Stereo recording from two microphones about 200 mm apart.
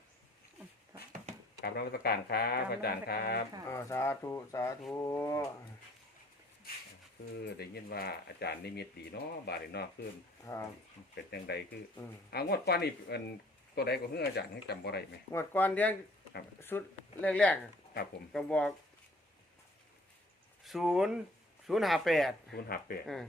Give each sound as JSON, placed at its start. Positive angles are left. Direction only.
{"t": 1.6, "sound": "speech", "side_deg": 50}
{"t": 3.7, "sound": "speech", "side_deg": 15}
{"t": 7.6, "sound": "speech", "side_deg": 50}
{"t": 10.4, "sound": "speech", "side_deg": 15}
{"t": 11.3, "sound": "speech", "side_deg": 55}
{"t": 15.3, "sound": "speech", "side_deg": 10}
{"t": 20.7, "sound": "speech", "side_deg": 0}
{"t": 22.5, "sound": "speech", "side_deg": 50}